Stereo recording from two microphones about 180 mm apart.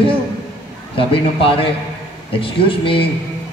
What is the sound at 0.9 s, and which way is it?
A man's voice, 30° left (ahead or behind).